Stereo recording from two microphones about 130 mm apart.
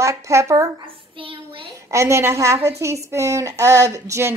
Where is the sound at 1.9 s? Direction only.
20° right (ahead or behind).